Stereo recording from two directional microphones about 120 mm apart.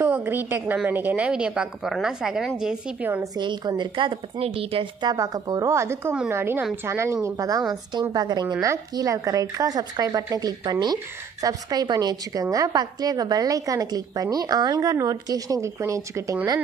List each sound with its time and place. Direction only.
0.0 s a woman's voice: 20° right (ahead or behind)
3.3 s a woman's voice: 40° right (ahead or behind)
5.0 s a woman's voice: 30° right (ahead or behind)